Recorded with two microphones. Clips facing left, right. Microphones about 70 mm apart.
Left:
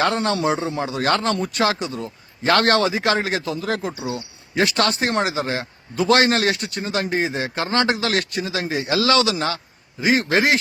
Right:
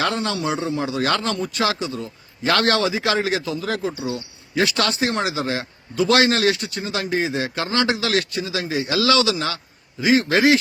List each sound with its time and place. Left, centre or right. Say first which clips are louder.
0.1 s speech: left 3 dB; left
1.2 s speech: left 2 dB; left